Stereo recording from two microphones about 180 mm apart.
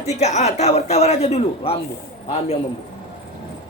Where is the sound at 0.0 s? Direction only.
40° left (ahead or behind).